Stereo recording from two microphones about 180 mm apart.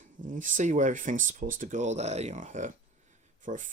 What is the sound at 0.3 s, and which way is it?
Speech, 45° right (ahead or behind).